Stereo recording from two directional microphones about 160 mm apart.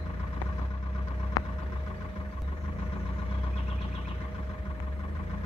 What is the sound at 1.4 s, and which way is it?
Vehicle, 20° left (ahead or behind).